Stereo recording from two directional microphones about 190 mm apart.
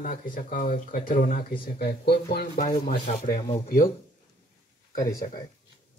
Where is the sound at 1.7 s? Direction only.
55° left (ahead or behind).